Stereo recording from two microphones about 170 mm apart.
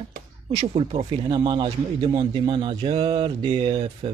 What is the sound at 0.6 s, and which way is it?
Speech, 35° right (ahead or behind).